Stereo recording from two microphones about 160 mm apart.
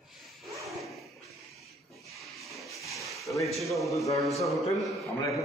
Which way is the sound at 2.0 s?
Centre (ahead or behind).